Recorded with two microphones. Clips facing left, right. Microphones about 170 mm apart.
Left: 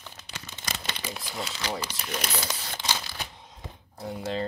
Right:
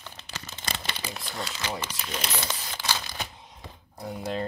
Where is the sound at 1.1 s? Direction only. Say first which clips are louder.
Even; 5° left (ahead or behind).